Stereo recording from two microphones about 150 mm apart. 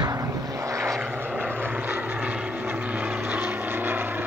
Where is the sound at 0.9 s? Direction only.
10° right (ahead or behind).